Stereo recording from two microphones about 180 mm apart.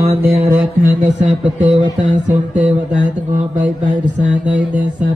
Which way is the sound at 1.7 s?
40° right (ahead or behind).